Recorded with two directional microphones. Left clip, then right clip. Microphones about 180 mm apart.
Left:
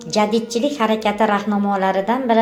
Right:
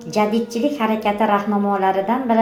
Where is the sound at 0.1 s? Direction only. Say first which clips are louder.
Left 1 dB; 35° left (ahead or behind).